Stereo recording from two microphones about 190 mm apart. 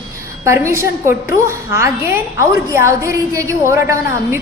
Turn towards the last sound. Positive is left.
turn(degrees=-15)  # may be behind; listen again after turning